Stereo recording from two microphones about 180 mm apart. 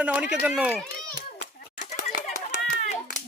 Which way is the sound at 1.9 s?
45° left (ahead or behind).